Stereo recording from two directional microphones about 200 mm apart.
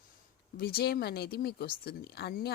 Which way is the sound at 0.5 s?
50° left (ahead or behind).